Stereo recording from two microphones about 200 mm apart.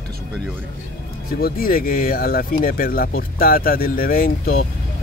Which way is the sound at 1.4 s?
45° left (ahead or behind).